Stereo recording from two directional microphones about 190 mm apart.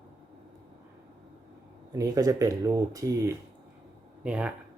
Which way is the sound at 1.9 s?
15° right (ahead or behind).